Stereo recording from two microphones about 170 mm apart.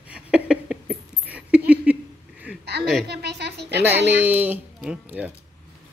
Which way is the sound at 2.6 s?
75° right (ahead or behind).